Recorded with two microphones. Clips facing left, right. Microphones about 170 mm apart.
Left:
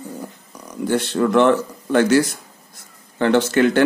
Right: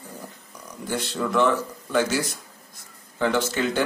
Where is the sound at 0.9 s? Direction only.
65° left (ahead or behind).